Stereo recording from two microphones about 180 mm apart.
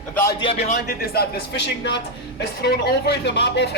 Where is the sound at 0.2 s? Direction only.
15° left (ahead or behind).